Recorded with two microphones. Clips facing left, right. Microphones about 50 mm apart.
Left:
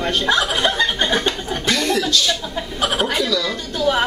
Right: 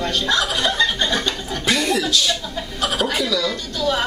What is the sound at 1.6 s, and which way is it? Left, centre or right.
Chuckle, centre.